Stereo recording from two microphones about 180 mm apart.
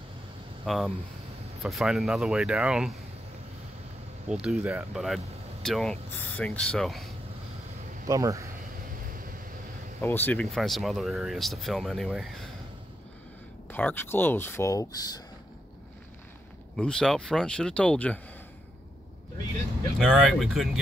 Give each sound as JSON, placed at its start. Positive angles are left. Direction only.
{"t": 0.7, "sound": "speech", "side_deg": 0}
{"t": 4.3, "sound": "speech", "side_deg": -5}
{"t": 8.1, "sound": "speech", "side_deg": -15}
{"t": 10.0, "sound": "speech", "side_deg": 10}
{"t": 13.7, "sound": "speech", "side_deg": 10}
{"t": 16.7, "sound": "speech", "side_deg": 5}
{"t": 20.0, "sound": "speech", "side_deg": 0}